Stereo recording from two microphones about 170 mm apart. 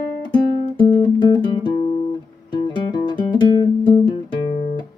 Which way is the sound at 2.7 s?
25° left (ahead or behind).